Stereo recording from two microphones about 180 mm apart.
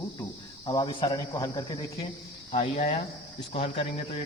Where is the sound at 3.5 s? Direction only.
30° left (ahead or behind).